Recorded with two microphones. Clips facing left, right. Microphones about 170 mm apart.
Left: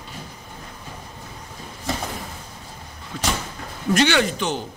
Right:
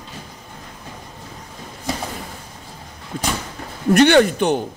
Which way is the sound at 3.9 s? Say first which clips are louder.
Right 7 dB; 55° right (ahead or behind).